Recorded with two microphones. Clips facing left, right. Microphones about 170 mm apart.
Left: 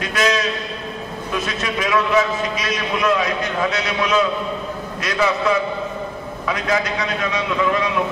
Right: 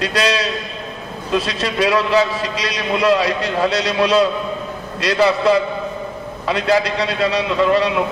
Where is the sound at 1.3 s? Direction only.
35° right (ahead or behind).